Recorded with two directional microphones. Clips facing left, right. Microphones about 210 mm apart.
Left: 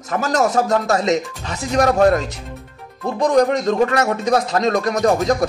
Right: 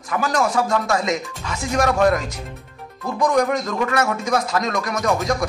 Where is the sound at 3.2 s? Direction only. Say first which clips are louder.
Left 4 dB; 35° left (ahead or behind).